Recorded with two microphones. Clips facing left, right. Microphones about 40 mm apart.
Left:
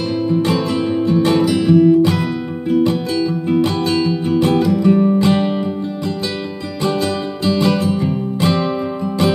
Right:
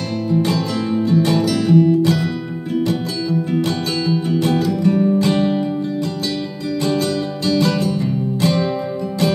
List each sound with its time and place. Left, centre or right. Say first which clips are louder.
0.3 s music: even; left
6.8 s music: left 1 dB; left